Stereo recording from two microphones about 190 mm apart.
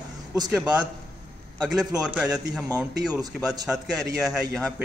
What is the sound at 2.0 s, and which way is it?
A man's voice, centre (ahead or behind).